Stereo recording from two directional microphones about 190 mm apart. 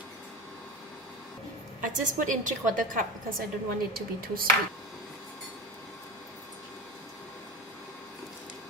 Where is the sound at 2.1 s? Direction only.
40° right (ahead or behind).